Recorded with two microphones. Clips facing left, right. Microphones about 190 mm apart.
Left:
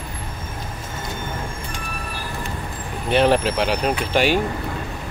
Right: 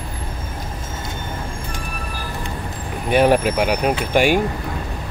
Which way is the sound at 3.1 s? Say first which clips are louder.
Right 2 dB; 10° right (ahead or behind).